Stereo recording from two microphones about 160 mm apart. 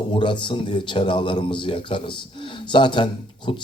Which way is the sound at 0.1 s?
30° left (ahead or behind).